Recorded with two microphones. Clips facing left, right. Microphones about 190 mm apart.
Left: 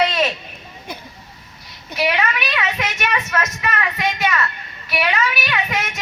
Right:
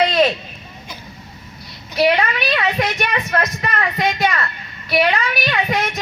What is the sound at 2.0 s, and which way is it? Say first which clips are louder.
Speech: right 4 dB; 35° right (ahead or behind).